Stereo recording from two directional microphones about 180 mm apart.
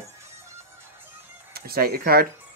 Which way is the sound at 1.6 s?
55° right (ahead or behind).